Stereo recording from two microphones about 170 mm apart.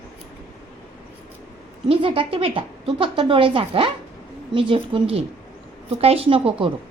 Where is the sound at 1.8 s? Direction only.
30° right (ahead or behind).